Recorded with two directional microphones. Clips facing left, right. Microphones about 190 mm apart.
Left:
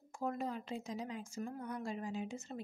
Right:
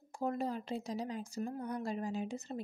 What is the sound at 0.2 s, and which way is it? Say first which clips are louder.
A woman's voice: right 3 dB; 30° right (ahead or behind).